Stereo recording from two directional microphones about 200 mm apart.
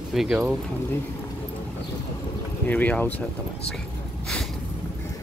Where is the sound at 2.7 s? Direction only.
10° left (ahead or behind).